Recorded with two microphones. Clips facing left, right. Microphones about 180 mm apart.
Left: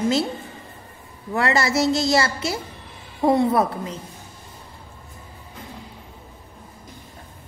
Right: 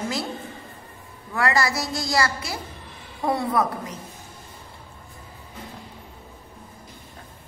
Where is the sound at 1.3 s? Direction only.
25° left (ahead or behind).